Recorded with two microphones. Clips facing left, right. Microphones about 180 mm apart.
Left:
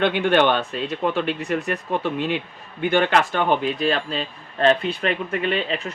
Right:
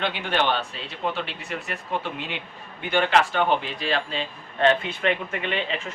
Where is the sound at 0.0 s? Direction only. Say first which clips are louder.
Left 7 dB; 55° left (ahead or behind).